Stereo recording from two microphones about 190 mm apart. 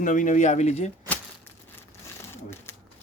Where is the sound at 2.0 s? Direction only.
15° left (ahead or behind).